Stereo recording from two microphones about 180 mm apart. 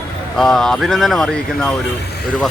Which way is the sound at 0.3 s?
Centre (ahead or behind).